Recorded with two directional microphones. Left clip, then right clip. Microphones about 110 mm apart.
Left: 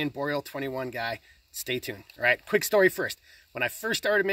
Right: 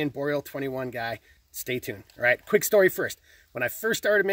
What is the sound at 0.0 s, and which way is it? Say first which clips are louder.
Speech: right 2 dB; 30° right (ahead or behind).